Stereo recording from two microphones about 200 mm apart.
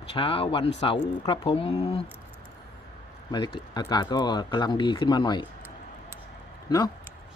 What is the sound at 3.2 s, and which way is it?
Speech, 25° left (ahead or behind).